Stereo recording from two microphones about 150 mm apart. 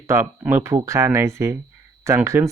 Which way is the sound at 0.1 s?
20° right (ahead or behind).